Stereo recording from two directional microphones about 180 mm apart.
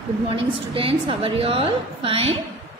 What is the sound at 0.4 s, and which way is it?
A woman's voice, 30° right (ahead or behind).